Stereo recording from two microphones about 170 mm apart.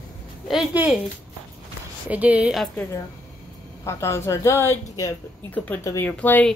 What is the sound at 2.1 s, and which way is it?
Speech, 10° right (ahead or behind).